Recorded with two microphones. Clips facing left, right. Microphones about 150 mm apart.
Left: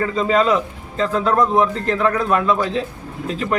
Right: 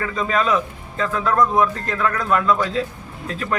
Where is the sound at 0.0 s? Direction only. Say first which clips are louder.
Left 4 dB; 25° left (ahead or behind).